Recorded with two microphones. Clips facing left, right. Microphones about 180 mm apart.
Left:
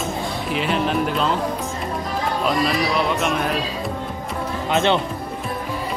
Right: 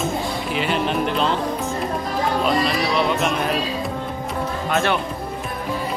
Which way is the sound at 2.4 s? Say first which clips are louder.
Left 3 dB; centre (ahead or behind).